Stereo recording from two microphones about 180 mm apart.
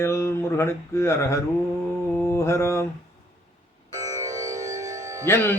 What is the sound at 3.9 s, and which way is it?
Music, 20° right (ahead or behind).